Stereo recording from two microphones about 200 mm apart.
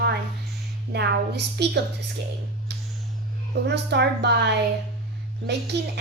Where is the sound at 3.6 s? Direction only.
55° right (ahead or behind).